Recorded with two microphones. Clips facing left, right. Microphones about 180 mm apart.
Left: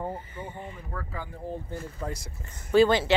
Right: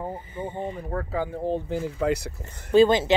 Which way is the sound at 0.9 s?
65° right (ahead or behind).